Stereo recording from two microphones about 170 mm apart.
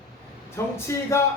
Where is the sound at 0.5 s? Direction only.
15° left (ahead or behind).